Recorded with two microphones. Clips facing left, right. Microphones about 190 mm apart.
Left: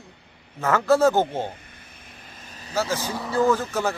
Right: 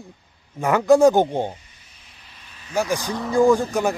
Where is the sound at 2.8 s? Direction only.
15° right (ahead or behind).